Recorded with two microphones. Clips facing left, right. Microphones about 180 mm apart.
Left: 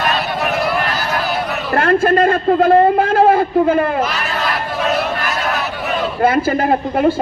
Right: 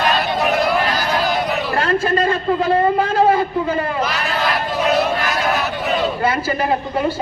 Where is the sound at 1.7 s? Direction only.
55° left (ahead or behind).